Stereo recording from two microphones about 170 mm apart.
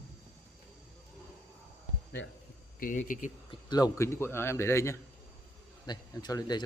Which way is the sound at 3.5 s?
25° left (ahead or behind).